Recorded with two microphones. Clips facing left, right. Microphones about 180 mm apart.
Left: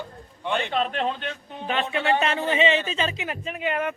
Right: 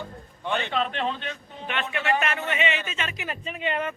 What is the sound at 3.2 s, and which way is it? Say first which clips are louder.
Speech: left 2 dB; 10° left (ahead or behind).